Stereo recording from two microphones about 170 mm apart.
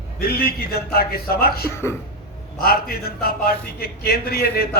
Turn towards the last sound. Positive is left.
turn(degrees=65)  # may be behind; listen again after turning